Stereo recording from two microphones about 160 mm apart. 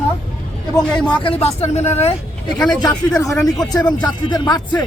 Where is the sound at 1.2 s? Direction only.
40° left (ahead or behind).